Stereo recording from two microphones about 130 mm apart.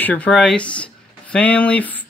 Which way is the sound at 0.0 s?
10° left (ahead or behind).